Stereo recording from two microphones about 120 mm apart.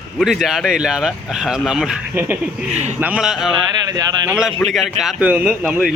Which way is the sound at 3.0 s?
10° right (ahead or behind).